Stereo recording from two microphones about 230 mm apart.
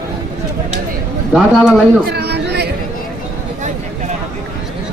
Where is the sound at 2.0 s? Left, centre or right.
Right.